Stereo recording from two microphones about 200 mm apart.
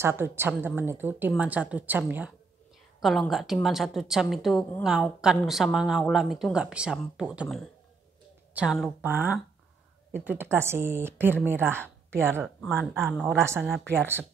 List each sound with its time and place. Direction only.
0.0 s a woman's voice: 10° right (ahead or behind)
12.7 s a woman's voice: centre (ahead or behind)